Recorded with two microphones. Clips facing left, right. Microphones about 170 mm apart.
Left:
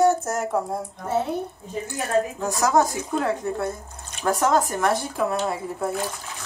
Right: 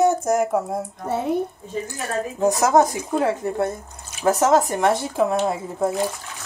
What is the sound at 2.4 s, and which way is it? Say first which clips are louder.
Speech: right 9 dB; 20° right (ahead or behind).